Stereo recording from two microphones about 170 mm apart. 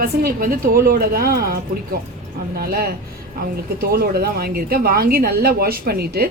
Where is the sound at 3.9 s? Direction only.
65° right (ahead or behind).